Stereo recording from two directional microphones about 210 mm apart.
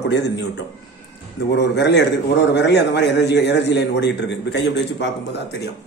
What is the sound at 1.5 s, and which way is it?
A man's voice, 55° left (ahead or behind).